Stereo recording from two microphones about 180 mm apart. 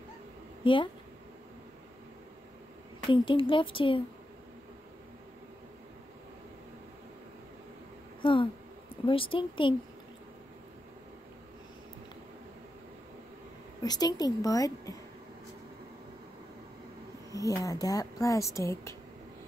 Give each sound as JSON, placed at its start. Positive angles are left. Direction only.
{"t": 0.6, "sound": "a woman's voice", "side_deg": 30}
{"t": 3.1, "sound": "a woman's voice", "side_deg": 30}
{"t": 8.2, "sound": "a woman's voice", "side_deg": 30}
{"t": 13.8, "sound": "a woman's voice", "side_deg": 20}
{"t": 17.3, "sound": "speech", "side_deg": 20}